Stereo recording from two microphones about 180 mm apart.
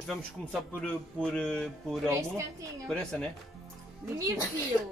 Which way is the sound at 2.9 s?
5° left (ahead or behind).